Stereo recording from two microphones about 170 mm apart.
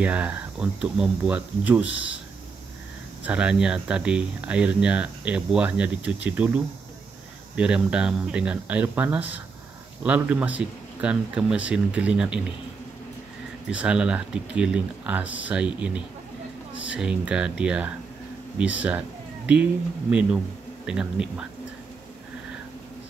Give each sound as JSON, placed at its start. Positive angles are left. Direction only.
{"t": 0.0, "sound": "speech", "side_deg": -10}
{"t": 1.9, "sound": "speech", "side_deg": 90}
{"t": 3.3, "sound": "speech", "side_deg": -5}
{"t": 13.7, "sound": "speech", "side_deg": -5}
{"t": 18.8, "sound": "a sound", "side_deg": -10}
{"t": 20.1, "sound": "speech", "side_deg": -5}